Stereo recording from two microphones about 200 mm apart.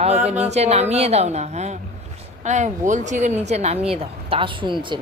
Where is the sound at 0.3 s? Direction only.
35° right (ahead or behind).